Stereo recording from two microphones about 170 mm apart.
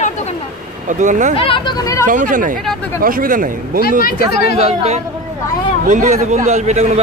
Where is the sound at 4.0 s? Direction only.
60° left (ahead or behind).